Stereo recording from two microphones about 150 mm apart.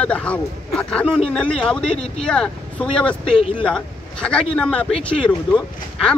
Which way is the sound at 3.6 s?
5° left (ahead or behind).